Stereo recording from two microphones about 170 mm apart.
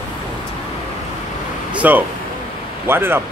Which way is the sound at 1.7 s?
10° right (ahead or behind).